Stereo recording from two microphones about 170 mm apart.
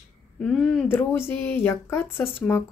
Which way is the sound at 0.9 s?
10° left (ahead or behind).